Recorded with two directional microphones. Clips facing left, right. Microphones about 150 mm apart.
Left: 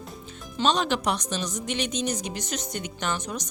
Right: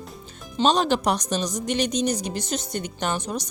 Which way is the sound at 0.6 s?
35° right (ahead or behind).